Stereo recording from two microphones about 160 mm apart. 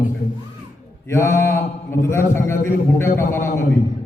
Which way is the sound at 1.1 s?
15° left (ahead or behind).